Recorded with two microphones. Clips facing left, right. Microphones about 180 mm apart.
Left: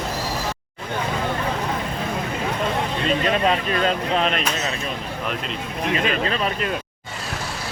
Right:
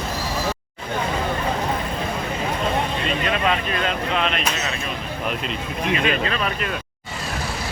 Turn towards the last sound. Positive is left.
turn(degrees=30)  # may be behind; listen again after turning